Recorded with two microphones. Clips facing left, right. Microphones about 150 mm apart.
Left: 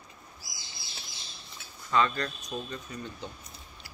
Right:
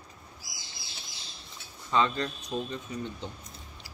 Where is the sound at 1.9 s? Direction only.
20° right (ahead or behind).